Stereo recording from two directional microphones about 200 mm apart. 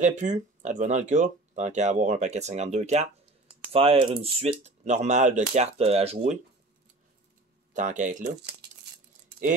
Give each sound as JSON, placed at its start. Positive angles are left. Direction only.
{"t": 0.0, "sound": "speech", "side_deg": -40}
{"t": 7.7, "sound": "speech", "side_deg": -40}